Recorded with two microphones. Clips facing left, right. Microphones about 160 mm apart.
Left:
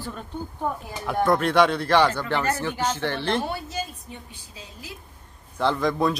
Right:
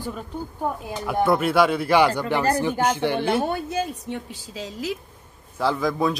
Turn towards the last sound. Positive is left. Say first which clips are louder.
# even
turn(degrees=0)  # may be behind; listen again after turning